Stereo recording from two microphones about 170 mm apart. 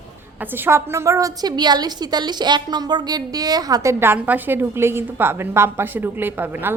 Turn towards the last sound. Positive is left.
turn(degrees=-10)  # may be behind; listen again after turning